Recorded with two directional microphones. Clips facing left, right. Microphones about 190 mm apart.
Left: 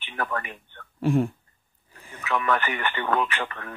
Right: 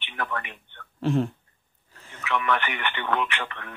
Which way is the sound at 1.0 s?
10° left (ahead or behind).